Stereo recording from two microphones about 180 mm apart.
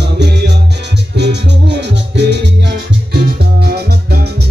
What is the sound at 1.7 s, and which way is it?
Music, 70° right (ahead or behind).